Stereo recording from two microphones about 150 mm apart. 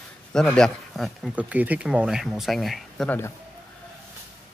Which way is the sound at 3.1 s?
15° left (ahead or behind).